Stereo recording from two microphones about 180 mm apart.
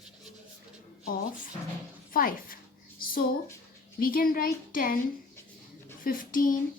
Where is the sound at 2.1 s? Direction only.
50° left (ahead or behind).